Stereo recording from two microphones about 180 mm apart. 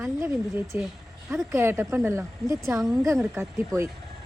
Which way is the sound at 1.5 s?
15° right (ahead or behind).